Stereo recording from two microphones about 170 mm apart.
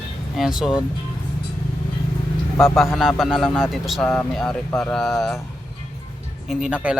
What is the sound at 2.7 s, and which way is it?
Speech, centre (ahead or behind).